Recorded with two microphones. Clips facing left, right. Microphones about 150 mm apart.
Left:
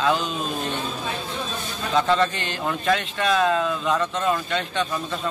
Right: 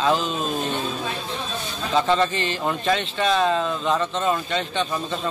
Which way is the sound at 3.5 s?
25° right (ahead or behind).